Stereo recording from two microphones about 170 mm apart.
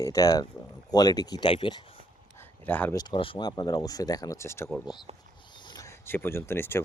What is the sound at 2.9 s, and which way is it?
Speech, 25° left (ahead or behind).